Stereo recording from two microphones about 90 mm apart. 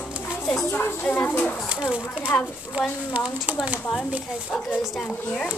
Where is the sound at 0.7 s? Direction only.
25° left (ahead or behind).